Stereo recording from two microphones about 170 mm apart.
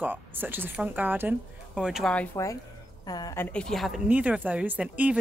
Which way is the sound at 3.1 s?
20° left (ahead or behind).